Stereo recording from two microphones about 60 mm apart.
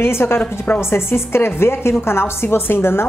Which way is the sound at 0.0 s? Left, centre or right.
Left.